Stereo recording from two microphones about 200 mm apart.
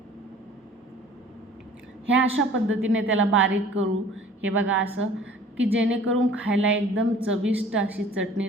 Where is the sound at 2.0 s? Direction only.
70° right (ahead or behind).